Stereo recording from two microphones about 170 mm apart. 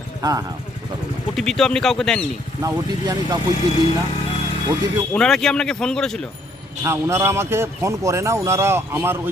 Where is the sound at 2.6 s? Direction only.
20° right (ahead or behind).